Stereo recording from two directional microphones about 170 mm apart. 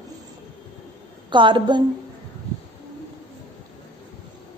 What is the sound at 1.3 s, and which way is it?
Speech, 30° right (ahead or behind).